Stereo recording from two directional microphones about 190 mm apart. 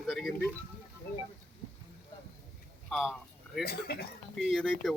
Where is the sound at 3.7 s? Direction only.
55° left (ahead or behind).